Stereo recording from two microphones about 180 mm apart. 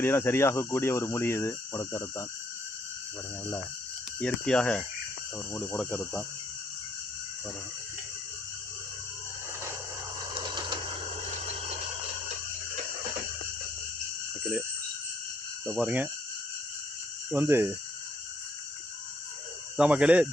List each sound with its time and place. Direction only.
0.0 s speech: 10° left (ahead or behind)
4.2 s speech: 5° left (ahead or behind)
10.3 s a sound: 25° right (ahead or behind)
15.6 s speech: 5° right (ahead or behind)
17.3 s speech: 10° right (ahead or behind)
19.7 s speech: 5° right (ahead or behind)